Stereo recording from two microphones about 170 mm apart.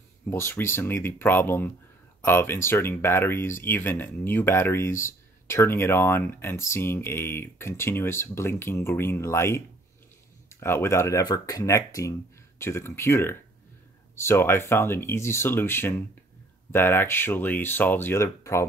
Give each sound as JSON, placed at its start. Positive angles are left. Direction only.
{"t": 0.2, "sound": "speech", "side_deg": 15}